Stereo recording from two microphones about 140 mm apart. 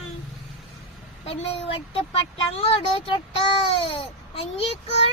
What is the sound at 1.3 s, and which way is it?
A child's voice, 40° left (ahead or behind).